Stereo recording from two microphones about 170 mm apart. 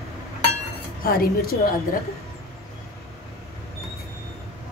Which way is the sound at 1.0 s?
60° left (ahead or behind).